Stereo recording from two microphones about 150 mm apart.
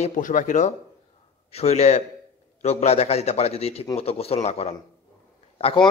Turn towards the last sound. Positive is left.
turn(degrees=35)  # may be behind; listen again after turning